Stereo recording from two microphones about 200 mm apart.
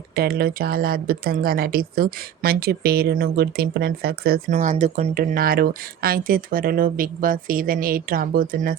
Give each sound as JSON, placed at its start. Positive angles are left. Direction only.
{"t": 0.2, "sound": "speech", "side_deg": -50}
{"t": 5.2, "sound": "speech", "side_deg": -45}